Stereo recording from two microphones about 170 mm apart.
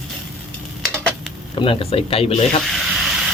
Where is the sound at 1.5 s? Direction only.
30° left (ahead or behind).